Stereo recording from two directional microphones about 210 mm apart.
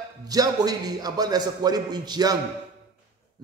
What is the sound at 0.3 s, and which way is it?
A man's voice, 20° right (ahead or behind).